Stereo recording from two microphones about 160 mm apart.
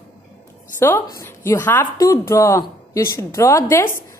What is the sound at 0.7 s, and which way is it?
A woman's voice, 15° left (ahead or behind).